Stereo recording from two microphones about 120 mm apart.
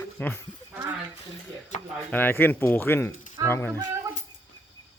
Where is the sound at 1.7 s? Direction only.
90° left.